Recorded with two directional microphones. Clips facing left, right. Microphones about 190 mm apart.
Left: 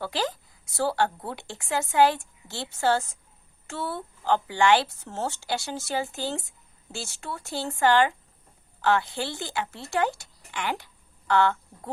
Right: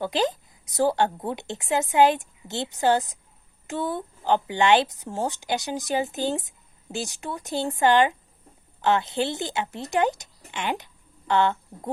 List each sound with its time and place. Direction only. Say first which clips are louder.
0.0 s a woman's voice: right 5 dB; 20° right (ahead or behind)